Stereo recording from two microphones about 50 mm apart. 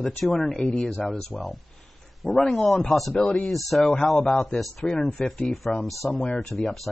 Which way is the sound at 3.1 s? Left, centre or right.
Centre.